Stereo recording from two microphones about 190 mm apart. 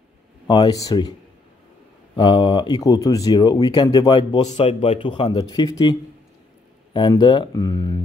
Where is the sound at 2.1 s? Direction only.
25° left (ahead or behind).